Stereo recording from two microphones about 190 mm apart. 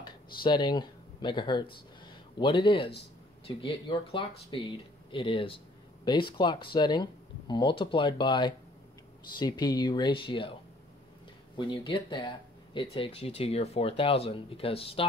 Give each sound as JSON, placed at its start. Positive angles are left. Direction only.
{"t": 0.0, "sound": "speech", "side_deg": 25}
{"t": 11.5, "sound": "speech", "side_deg": 25}